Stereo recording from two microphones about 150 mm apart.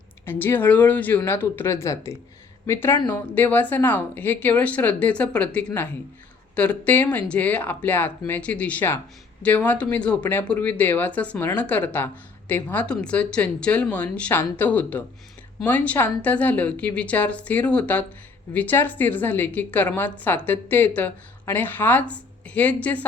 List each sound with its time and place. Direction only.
0.3 s speech: 15° left (ahead or behind)